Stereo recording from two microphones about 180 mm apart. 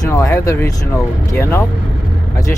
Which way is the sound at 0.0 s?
15° left (ahead or behind).